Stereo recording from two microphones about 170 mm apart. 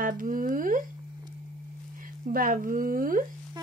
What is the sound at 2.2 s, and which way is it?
Speech, 55° right (ahead or behind).